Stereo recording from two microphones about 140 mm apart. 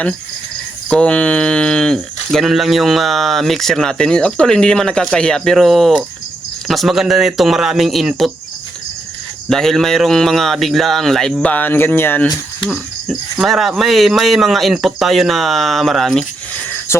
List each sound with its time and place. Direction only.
0.9 s speech: 5° left (ahead or behind)
9.5 s speech: 5° left (ahead or behind)
12.6 s speech: centre (ahead or behind)
16.9 s speech: 20° left (ahead or behind)